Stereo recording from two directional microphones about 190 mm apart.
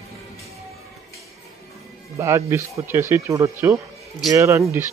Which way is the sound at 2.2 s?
15° right (ahead or behind).